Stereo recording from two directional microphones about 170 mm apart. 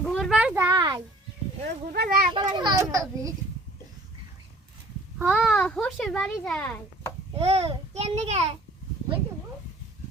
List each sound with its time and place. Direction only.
0.0 s a sound: centre (ahead or behind)
0.5 s a sound: 20° right (ahead or behind)
1.6 s speech: 65° right (ahead or behind)
2.3 s a child's voice: 25° right (ahead or behind)
5.2 s a child's voice: 5° right (ahead or behind)
7.3 s a child's voice: 35° right (ahead or behind)